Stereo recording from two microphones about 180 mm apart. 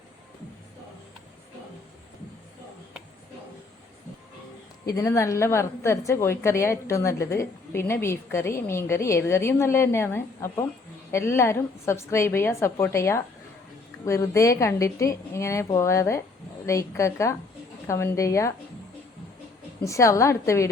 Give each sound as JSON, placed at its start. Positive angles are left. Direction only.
{"t": 4.9, "sound": "a woman's voice", "side_deg": 20}
{"t": 19.8, "sound": "a woman's voice", "side_deg": 15}